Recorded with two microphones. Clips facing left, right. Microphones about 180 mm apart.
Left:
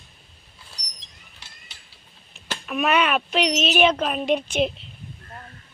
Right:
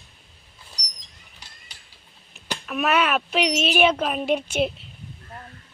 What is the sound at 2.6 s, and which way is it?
Speech, centre (ahead or behind).